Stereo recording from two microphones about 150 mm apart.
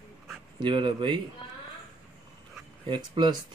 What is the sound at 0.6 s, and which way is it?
Speech, 30° right (ahead or behind).